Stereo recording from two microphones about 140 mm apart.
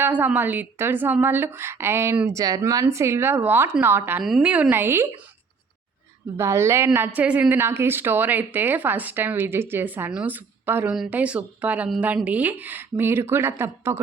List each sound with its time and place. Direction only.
0.0 s a woman's voice: 10° right (ahead or behind)
4.2 s a woman's voice: 5° right (ahead or behind)
6.3 s a woman's voice: 20° right (ahead or behind)